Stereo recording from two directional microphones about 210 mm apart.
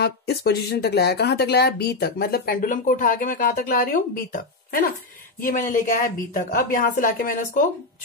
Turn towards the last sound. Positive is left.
turn(degrees=45)  # may be behind; listen again after turning